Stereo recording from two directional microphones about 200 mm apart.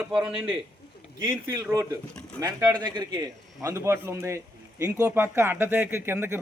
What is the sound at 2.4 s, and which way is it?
A man's voice, 20° right (ahead or behind).